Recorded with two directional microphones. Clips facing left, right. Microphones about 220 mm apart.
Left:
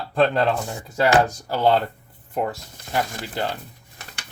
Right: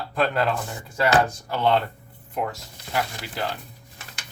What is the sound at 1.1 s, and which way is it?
Speech, 35° left (ahead or behind).